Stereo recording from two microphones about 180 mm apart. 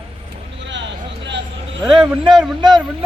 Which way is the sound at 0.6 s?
85° right.